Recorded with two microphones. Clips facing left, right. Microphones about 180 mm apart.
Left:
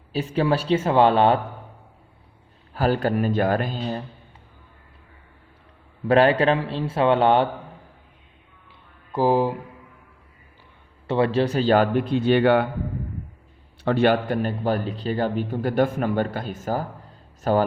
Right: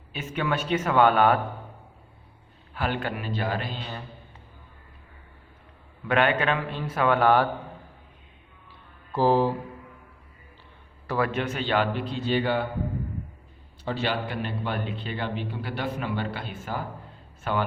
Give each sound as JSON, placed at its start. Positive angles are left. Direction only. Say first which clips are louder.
{"t": 0.1, "sound": "speech", "louder": "left 7 dB", "side_deg": 35}
{"t": 2.7, "sound": "speech", "louder": "left 8 dB", "side_deg": 40}
{"t": 6.1, "sound": "speech", "louder": "left 6 dB", "side_deg": 35}
{"t": 9.1, "sound": "speech", "louder": "left 2 dB", "side_deg": 15}
{"t": 11.0, "sound": "speech", "louder": "left 6 dB", "side_deg": 25}
{"t": 13.8, "sound": "a man's voice", "louder": "left 9 dB", "side_deg": 55}